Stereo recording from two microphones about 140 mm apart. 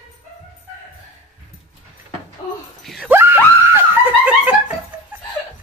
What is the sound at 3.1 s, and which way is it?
Screaming, 15° right (ahead or behind).